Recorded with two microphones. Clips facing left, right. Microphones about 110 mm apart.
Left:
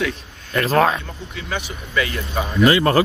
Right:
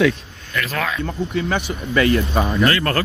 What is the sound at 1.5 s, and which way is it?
Speech, 50° right (ahead or behind).